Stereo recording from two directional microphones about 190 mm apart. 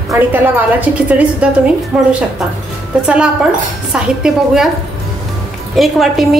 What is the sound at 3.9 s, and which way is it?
Speech, 5° right (ahead or behind).